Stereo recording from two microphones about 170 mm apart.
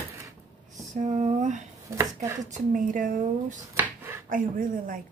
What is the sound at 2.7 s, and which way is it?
Speech, 50° right (ahead or behind).